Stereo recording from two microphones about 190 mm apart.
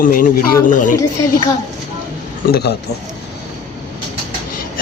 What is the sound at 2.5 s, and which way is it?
Speech, 60° left (ahead or behind).